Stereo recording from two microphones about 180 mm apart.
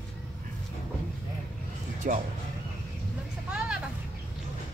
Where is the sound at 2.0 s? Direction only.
50° right (ahead or behind).